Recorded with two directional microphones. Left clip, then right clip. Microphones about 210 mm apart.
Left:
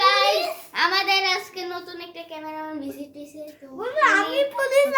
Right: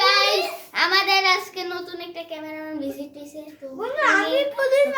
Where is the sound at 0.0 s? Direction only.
10° right (ahead or behind).